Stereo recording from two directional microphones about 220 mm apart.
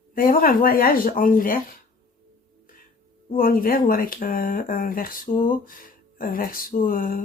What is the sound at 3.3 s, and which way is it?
Speech, 40° left (ahead or behind).